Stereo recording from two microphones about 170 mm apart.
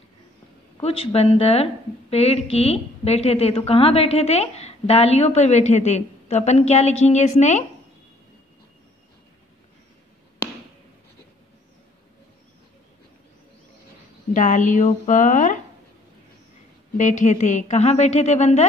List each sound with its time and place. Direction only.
0.8 s a woman's voice: 35° left (ahead or behind)
14.3 s a woman's voice: 45° left (ahead or behind)
16.9 s a woman's voice: 45° left (ahead or behind)